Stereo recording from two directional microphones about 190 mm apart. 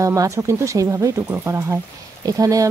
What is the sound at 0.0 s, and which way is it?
Speech, 15° right (ahead or behind).